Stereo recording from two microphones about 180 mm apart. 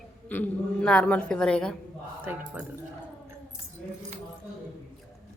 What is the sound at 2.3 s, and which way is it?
Speech, 10° right (ahead or behind).